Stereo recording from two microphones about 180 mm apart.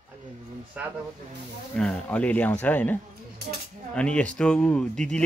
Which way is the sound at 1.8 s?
5° left (ahead or behind).